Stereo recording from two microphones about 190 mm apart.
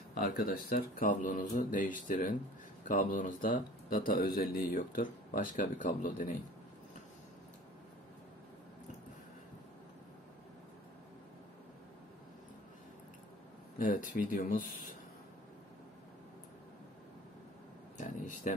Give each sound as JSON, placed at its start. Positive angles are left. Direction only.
{"t": 0.1, "sound": "speech", "side_deg": 50}
{"t": 13.7, "sound": "speech", "side_deg": 45}
{"t": 17.9, "sound": "a sound", "side_deg": 40}